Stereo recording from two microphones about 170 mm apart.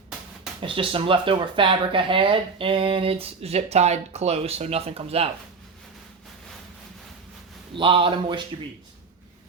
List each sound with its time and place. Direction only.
0.6 s speech: 30° right (ahead or behind)
7.7 s speech: 30° right (ahead or behind)